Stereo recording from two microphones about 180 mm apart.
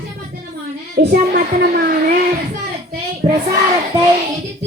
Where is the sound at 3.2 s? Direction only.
40° right (ahead or behind).